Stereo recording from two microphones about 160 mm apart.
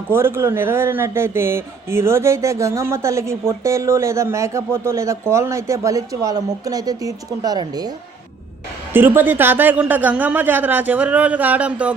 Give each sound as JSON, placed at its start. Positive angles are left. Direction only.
{"t": 0.1, "sound": "speech", "side_deg": -15}
{"t": 8.9, "sound": "speech", "side_deg": -15}